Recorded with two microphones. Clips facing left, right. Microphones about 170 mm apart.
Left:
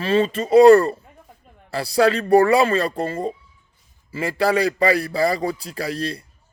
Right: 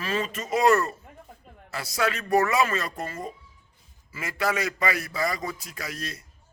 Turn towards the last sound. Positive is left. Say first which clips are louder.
# left 10 dB
turn(degrees=30)  # may be behind; listen again after turning